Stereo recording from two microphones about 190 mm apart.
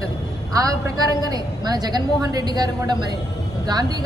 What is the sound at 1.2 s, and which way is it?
A woman's voice, 20° right (ahead or behind).